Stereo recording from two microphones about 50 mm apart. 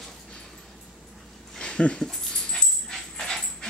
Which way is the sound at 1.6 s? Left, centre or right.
Centre.